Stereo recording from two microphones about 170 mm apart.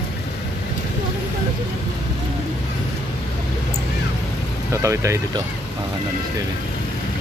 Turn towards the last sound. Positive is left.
turn(degrees=-15)  # may be behind; listen again after turning